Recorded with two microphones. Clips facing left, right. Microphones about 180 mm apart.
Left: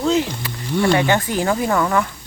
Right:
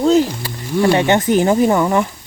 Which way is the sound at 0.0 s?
40° right (ahead or behind).